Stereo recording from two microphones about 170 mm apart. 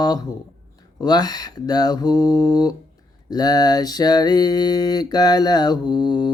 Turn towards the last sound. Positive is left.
turn(degrees=25)  # may be behind; listen again after turning